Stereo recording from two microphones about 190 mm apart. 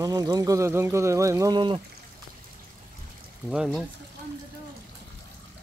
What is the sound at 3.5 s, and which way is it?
Speech, 5° right (ahead or behind).